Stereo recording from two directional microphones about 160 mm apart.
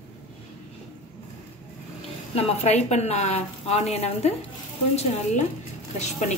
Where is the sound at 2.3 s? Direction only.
40° left (ahead or behind).